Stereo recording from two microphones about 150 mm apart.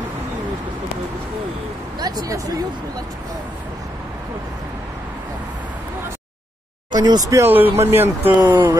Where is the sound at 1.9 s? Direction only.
25° right (ahead or behind).